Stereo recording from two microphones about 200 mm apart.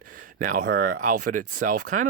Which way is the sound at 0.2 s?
40° right (ahead or behind).